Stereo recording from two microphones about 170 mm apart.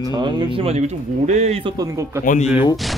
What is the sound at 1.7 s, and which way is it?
Speech, 20° right (ahead or behind).